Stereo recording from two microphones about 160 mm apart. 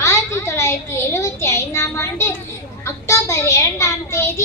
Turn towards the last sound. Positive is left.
turn(degrees=15)  # may be behind; listen again after turning